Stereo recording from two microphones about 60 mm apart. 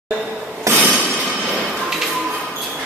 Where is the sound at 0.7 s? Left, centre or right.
Right.